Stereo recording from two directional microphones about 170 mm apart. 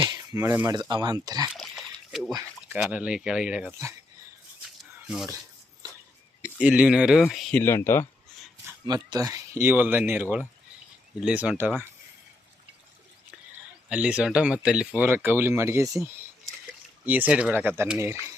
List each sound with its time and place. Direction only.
0.0 s a sound: 20° right (ahead or behind)
0.8 s speech: 25° right (ahead or behind)
1.5 s a sound: centre (ahead or behind)
2.7 s speech: 5° right (ahead or behind)
4.8 s a sound: 5° right (ahead or behind)
6.4 s speech: 10° right (ahead or behind)
7.6 s speech: 15° left (ahead or behind)
8.9 s speech: 20° right (ahead or behind)
13.9 s speech: 5° right (ahead or behind)